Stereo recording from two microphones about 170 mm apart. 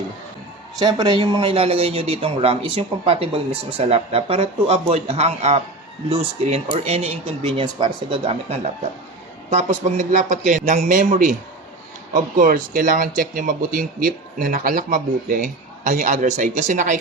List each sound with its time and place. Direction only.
0.8 s speech: 25° right (ahead or behind); by 17.0 s 45° right (ahead or behind)